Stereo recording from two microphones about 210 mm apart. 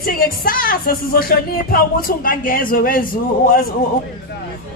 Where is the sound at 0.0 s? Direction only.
45° left (ahead or behind).